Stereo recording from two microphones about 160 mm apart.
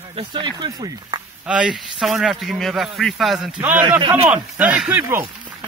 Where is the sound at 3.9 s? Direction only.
30° right (ahead or behind).